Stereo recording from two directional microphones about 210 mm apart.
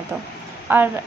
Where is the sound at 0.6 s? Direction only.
10° right (ahead or behind).